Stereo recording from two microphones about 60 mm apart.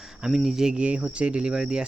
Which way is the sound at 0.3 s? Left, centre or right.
Centre.